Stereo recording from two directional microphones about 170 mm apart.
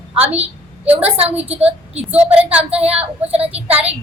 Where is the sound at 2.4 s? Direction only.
5° right (ahead or behind).